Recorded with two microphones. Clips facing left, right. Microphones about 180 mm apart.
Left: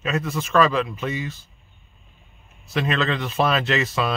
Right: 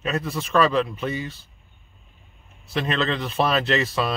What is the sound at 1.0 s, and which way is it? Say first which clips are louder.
Speech: even; 30° right (ahead or behind).